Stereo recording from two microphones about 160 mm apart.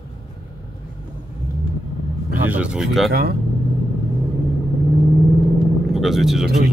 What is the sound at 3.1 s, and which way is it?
Speech, 80° right.